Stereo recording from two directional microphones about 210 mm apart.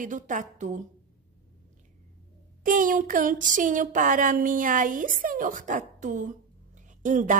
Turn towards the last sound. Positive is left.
turn(degrees=-40)  # may be behind; listen again after turning